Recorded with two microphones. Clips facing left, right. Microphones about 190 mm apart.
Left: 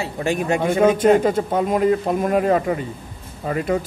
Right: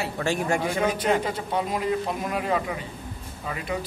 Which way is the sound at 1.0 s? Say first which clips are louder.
Left 9 dB; 50° left (ahead or behind).